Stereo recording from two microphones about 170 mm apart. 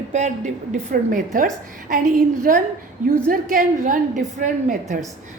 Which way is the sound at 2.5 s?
55° right (ahead or behind).